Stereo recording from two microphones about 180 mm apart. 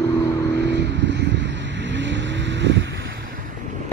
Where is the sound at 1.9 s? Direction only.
90° right.